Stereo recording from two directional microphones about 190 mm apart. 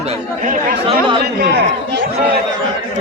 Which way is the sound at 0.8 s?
25° right (ahead or behind).